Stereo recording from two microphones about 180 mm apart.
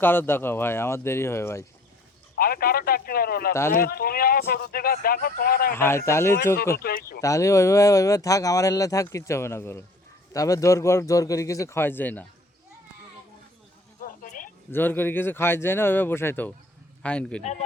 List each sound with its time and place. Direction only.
0.0 s speech: 10° left (ahead or behind)
2.4 s speech: 55° left (ahead or behind)
5.7 s speech: 15° left (ahead or behind)
6.7 s speech: 55° left (ahead or behind)
7.2 s speech: 15° left (ahead or behind)
14.0 s a sound: 50° left (ahead or behind)
14.7 s speech: 10° left (ahead or behind)